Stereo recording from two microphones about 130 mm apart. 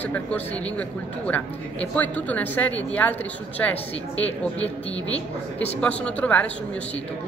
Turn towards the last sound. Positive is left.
turn(degrees=10)  # may be behind; listen again after turning